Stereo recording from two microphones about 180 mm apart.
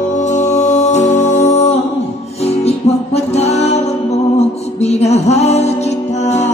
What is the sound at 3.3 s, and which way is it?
Music, 35° left (ahead or behind).